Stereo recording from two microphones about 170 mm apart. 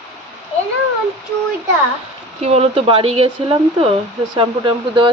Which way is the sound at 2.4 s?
35° right (ahead or behind).